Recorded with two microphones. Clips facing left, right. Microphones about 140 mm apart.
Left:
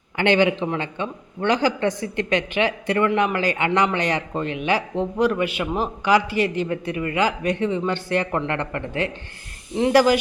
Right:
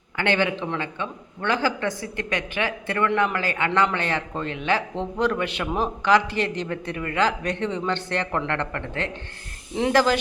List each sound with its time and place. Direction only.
0.2 s a man's voice: 20° left (ahead or behind)